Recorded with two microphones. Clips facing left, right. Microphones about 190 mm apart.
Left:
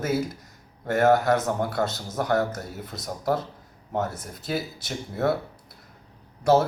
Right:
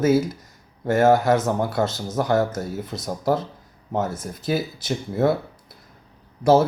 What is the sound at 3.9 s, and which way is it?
Speech, 25° right (ahead or behind).